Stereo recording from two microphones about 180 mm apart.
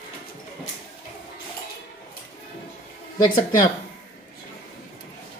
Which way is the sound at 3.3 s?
50° left (ahead or behind).